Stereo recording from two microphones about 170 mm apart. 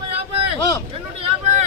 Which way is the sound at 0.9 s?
40° right (ahead or behind).